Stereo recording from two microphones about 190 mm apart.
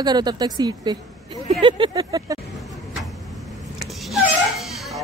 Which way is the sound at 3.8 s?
Centre (ahead or behind).